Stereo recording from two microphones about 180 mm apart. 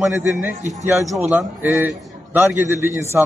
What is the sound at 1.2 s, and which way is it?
A man's voice, 10° right (ahead or behind).